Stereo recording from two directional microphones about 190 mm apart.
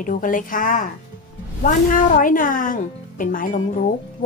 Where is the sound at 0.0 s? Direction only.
45° left (ahead or behind).